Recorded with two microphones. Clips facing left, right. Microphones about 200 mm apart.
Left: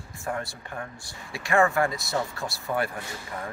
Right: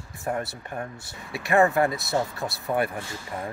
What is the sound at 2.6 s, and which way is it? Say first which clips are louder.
Speech: right 3 dB; 20° right (ahead or behind).